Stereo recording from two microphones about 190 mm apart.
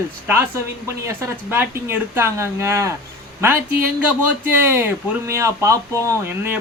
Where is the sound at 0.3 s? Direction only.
10° right (ahead or behind).